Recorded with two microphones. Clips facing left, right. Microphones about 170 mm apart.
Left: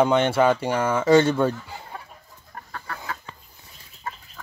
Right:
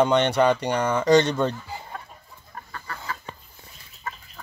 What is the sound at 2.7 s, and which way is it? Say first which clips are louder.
Chicken: left 1 dB; 65° left (ahead or behind).